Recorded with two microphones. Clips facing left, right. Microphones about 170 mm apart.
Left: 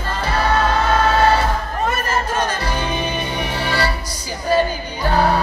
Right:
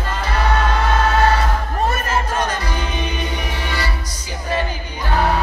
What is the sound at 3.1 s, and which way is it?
Music, 30° left (ahead or behind).